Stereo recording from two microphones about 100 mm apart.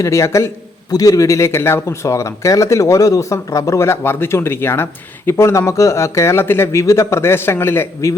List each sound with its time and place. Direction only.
0.0 s speech: 30° left (ahead or behind)